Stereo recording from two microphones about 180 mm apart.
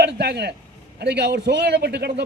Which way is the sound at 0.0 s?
65° right (ahead or behind).